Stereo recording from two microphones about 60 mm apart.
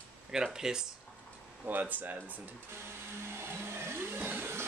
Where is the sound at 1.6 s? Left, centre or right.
Right.